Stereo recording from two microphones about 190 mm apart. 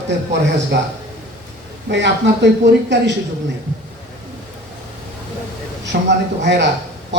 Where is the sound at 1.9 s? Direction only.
65° right (ahead or behind).